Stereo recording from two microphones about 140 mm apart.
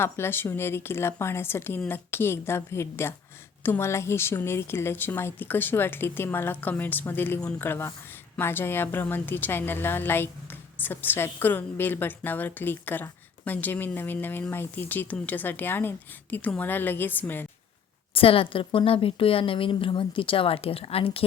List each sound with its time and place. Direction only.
0.0 s a woman's voice: 15° left (ahead or behind)
18.1 s a woman's voice: 40° left (ahead or behind)